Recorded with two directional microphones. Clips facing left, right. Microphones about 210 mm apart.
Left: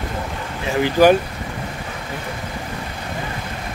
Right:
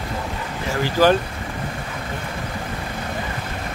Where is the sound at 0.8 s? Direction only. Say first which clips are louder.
Left 3 dB; 15° left (ahead or behind).